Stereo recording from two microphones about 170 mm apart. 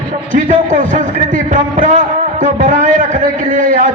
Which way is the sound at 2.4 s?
40° right (ahead or behind).